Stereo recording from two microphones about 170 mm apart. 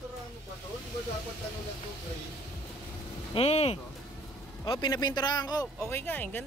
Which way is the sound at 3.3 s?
35° left (ahead or behind).